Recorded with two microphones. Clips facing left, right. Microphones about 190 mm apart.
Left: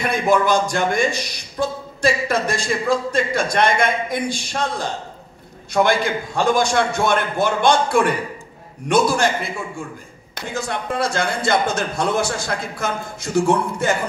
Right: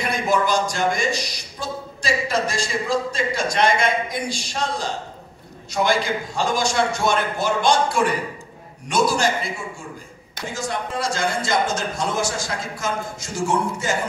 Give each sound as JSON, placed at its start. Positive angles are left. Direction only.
{"t": 0.0, "sound": "a man's voice", "side_deg": 55}